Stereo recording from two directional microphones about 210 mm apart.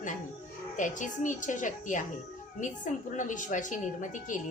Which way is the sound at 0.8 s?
40° left (ahead or behind).